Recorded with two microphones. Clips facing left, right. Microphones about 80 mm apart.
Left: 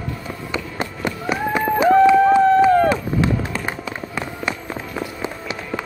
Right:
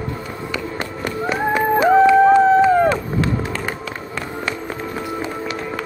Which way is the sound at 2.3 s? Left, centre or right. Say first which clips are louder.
Right 1 dB; centre.